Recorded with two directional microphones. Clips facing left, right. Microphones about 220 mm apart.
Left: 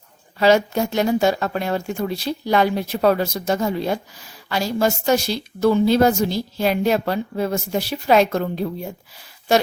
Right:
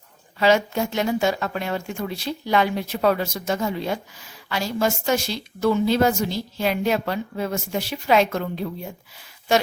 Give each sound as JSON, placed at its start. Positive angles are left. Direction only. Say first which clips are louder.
{"t": 0.3, "sound": "a woman's voice", "louder": "left 3 dB", "side_deg": 40}